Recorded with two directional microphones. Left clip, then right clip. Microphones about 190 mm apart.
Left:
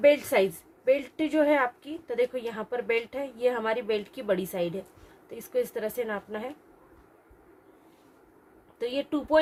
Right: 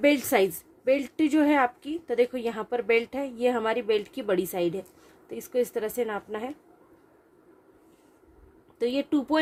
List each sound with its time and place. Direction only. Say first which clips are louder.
0.0 s a woman's voice: left 1 dB; 55° right (ahead or behind)
8.8 s a woman's voice: right 3 dB; 45° right (ahead or behind)